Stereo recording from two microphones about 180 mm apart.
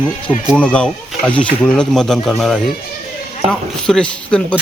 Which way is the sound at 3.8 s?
5° left (ahead or behind).